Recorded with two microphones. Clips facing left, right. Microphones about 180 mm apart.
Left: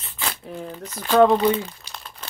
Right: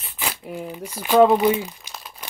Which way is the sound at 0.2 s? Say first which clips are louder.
Right 1 dB; 10° right (ahead or behind).